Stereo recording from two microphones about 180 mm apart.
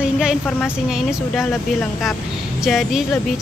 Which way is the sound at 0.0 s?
5° right (ahead or behind).